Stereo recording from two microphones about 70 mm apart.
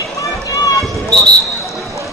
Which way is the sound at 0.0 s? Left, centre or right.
Left.